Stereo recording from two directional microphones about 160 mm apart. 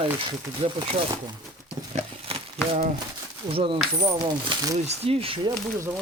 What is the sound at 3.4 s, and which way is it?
Speech, 35° right (ahead or behind).